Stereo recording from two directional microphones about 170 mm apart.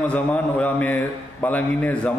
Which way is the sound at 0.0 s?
10° left (ahead or behind).